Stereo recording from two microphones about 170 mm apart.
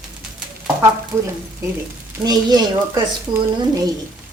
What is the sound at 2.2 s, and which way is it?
Speech, 25° right (ahead or behind).